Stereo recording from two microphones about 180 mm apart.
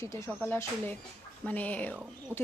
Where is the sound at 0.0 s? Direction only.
15° left (ahead or behind).